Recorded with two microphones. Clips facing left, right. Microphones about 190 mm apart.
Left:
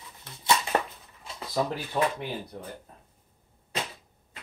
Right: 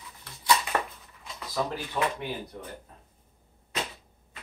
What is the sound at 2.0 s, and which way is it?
Speech, 35° left (ahead or behind).